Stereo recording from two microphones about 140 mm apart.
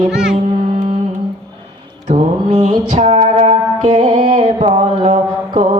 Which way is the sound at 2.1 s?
55° right (ahead or behind).